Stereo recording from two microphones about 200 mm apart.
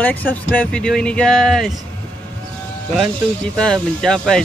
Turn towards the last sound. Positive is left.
turn(degrees=5)  # may be behind; listen again after turning